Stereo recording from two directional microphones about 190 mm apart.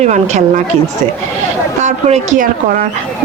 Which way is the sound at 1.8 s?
40° right (ahead or behind).